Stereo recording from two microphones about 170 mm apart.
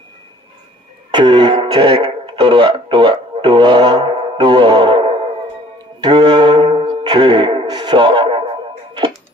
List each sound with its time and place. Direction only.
1.1 s music: 25° right (ahead or behind)